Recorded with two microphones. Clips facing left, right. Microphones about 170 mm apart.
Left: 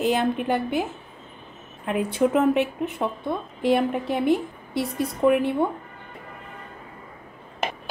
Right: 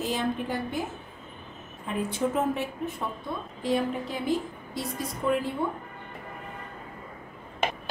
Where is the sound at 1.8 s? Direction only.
65° left (ahead or behind).